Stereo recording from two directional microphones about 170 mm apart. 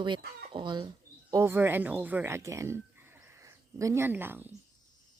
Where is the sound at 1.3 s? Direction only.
15° right (ahead or behind).